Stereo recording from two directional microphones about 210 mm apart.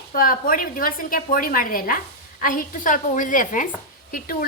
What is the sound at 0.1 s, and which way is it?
A woman's voice, 40° left (ahead or behind).